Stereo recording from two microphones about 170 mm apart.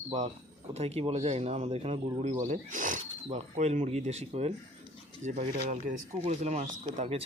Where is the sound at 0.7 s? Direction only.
40° right (ahead or behind).